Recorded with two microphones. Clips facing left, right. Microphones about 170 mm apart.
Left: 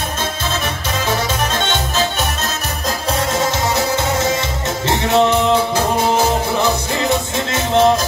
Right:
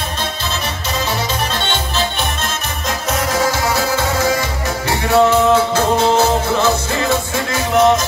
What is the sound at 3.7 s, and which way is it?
Music, 20° left (ahead or behind).